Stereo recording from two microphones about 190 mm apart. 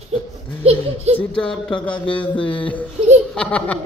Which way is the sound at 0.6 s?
30° right (ahead or behind).